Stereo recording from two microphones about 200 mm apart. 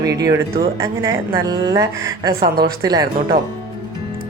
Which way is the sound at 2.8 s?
20° right (ahead or behind).